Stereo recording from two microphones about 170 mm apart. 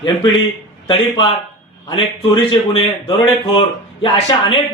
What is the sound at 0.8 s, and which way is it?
Speech, 30° left (ahead or behind).